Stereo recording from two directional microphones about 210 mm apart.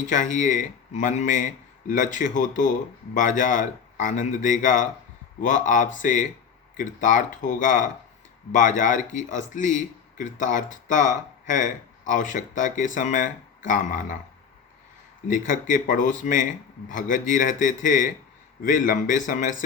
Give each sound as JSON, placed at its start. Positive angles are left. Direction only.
{"t": 0.0, "sound": "speech", "side_deg": 35}
{"t": 15.3, "sound": "speech", "side_deg": 40}